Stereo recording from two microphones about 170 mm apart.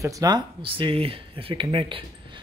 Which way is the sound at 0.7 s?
30° right (ahead or behind).